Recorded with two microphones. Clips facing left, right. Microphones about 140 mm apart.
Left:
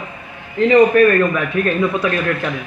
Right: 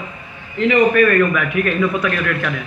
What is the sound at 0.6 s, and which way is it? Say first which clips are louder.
A man's voice: left 3 dB; 25° left (ahead or behind).